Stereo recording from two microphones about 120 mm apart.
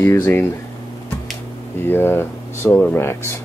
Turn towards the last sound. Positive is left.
turn(degrees=20)  # may be behind; listen again after turning